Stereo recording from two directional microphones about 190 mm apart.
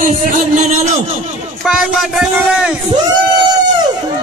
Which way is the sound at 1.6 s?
5° right (ahead or behind).